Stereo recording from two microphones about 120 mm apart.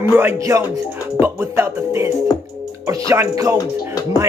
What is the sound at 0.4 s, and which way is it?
Speech, 25° right (ahead or behind).